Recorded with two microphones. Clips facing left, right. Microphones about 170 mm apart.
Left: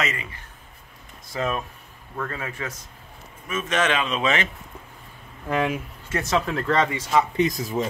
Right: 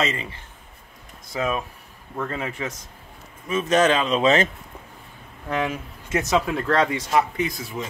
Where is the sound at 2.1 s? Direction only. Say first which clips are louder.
Right 3 dB; 20° right (ahead or behind).